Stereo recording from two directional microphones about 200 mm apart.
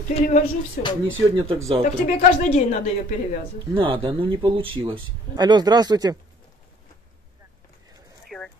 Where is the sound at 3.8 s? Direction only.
25° right (ahead or behind).